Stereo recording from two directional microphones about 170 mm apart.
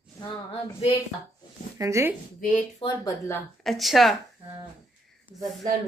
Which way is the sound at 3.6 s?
Centre (ahead or behind).